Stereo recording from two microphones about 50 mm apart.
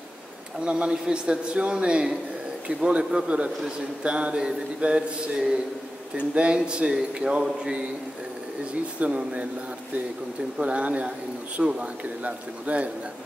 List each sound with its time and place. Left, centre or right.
0.6 s a man's voice: centre
9.0 s a man's voice: right
10.6 s a man's voice: right